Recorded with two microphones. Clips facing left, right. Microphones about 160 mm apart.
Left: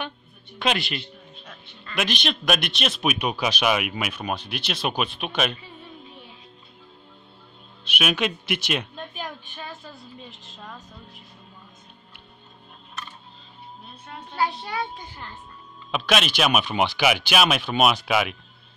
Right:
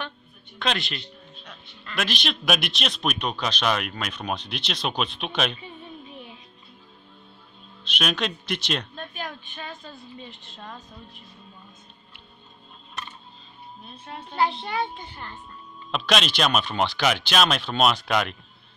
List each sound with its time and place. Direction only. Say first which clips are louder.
0.6 s speech: left 3 dB; 5° left (ahead or behind)
7.8 s speech: left 2 dB; 5° left (ahead or behind)
8.9 s speech: even; 15° left (ahead or behind)
10.2 s speech: right 1 dB; 5° left (ahead or behind)
15.9 s speech: left 1 dB; 5° left (ahead or behind)